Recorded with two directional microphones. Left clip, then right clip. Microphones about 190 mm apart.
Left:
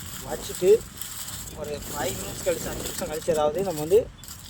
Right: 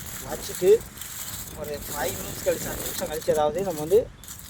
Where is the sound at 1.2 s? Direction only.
Centre (ahead or behind).